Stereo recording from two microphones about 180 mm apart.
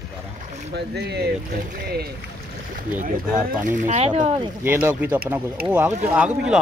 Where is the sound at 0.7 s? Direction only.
65° right (ahead or behind).